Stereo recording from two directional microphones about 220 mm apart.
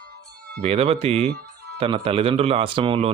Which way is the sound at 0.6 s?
30° right (ahead or behind).